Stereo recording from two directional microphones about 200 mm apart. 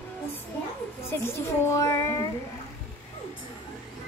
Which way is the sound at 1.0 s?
10° left (ahead or behind).